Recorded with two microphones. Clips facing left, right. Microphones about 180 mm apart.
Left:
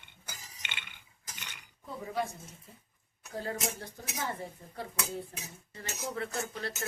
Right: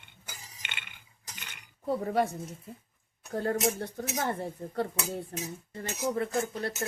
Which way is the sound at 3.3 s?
55° right (ahead or behind).